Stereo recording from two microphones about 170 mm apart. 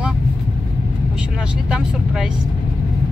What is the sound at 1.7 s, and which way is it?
Speech, 5° right (ahead or behind).